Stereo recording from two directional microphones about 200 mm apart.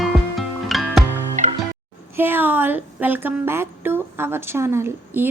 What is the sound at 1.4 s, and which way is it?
Music, 35° right (ahead or behind).